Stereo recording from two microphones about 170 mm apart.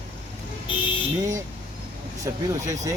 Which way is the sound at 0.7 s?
30° left (ahead or behind).